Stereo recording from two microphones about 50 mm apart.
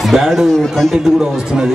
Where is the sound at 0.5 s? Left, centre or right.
Centre.